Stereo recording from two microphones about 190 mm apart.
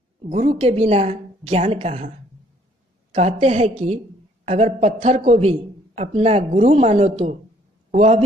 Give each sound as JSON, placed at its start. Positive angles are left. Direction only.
{"t": 0.2, "sound": "a man's voice", "side_deg": -35}